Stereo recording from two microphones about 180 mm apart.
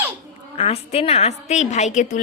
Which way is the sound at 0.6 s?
35° left (ahead or behind).